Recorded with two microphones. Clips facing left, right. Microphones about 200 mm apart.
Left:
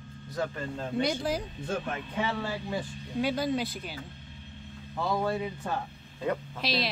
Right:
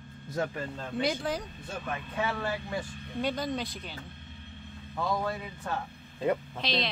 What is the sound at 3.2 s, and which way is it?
Speech, 5° left (ahead or behind).